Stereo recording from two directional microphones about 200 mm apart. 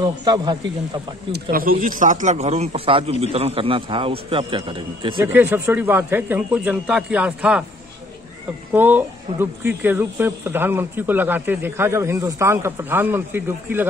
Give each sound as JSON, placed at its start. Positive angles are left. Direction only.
{"t": 0.0, "sound": "speech", "side_deg": -20}
{"t": 1.3, "sound": "speech", "side_deg": -45}
{"t": 5.2, "sound": "speech", "side_deg": -10}
{"t": 8.7, "sound": "speech", "side_deg": -10}